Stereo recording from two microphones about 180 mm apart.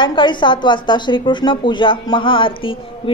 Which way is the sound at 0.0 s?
25° left (ahead or behind).